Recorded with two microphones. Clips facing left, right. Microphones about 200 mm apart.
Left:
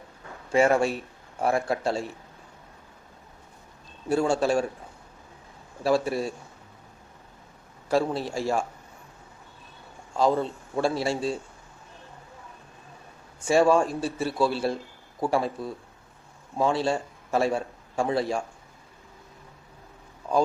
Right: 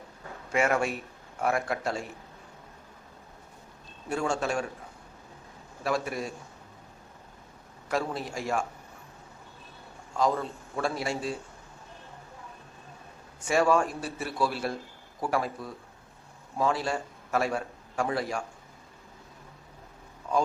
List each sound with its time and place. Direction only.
0.5 s a man's voice: 30° left (ahead or behind)
4.1 s a man's voice: 35° left (ahead or behind)
5.8 s a man's voice: 30° left (ahead or behind)
7.9 s a man's voice: 30° left (ahead or behind)
10.2 s a man's voice: 30° left (ahead or behind)
13.5 s a man's voice: 30° left (ahead or behind)